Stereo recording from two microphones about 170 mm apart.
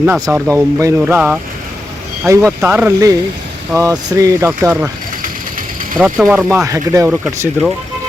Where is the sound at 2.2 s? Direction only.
20° right (ahead or behind).